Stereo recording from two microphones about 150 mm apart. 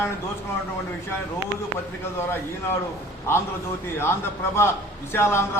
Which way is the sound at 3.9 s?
15° left (ahead or behind).